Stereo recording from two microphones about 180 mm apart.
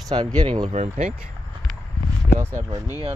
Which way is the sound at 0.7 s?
40° right (ahead or behind).